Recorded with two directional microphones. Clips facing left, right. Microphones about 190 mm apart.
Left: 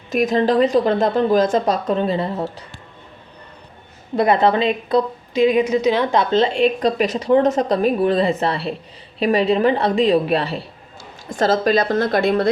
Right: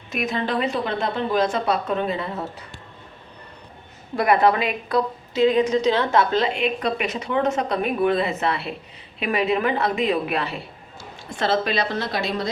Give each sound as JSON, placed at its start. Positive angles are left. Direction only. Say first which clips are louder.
{"t": 0.1, "sound": "speech", "louder": "left 8 dB", "side_deg": 40}
{"t": 4.1, "sound": "a woman's voice", "louder": "left 3 dB", "side_deg": 25}
{"t": 11.3, "sound": "a woman's voice", "louder": "left 6 dB", "side_deg": 45}